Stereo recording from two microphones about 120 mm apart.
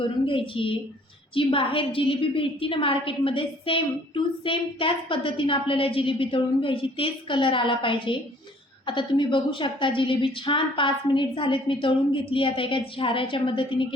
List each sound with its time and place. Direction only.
0.3 s a woman's voice: 45° left (ahead or behind)